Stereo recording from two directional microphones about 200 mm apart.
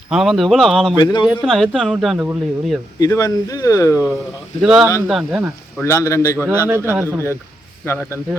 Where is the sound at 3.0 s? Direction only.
15° left (ahead or behind).